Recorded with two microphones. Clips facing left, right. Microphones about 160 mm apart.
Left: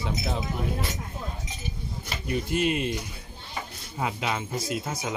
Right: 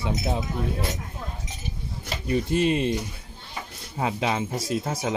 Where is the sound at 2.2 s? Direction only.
30° right (ahead or behind).